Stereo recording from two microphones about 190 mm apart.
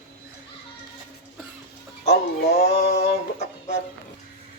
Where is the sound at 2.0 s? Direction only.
60° left (ahead or behind).